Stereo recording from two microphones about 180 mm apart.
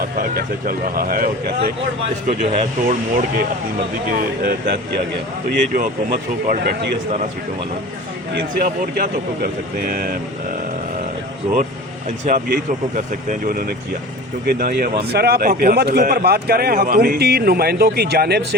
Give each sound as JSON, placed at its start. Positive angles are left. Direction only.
{"t": 0.2, "sound": "speech", "side_deg": -55}
{"t": 2.2, "sound": "speech", "side_deg": -40}
{"t": 4.1, "sound": "a man's voice", "side_deg": -55}
{"t": 6.5, "sound": "a man's voice", "side_deg": -55}
{"t": 8.3, "sound": "a man's voice", "side_deg": -65}
{"t": 11.5, "sound": "a man's voice", "side_deg": -45}